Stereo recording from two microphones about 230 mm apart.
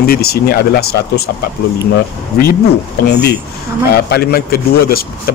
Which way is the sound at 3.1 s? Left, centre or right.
Left.